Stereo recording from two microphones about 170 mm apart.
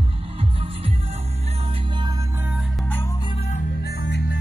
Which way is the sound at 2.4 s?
10° right (ahead or behind).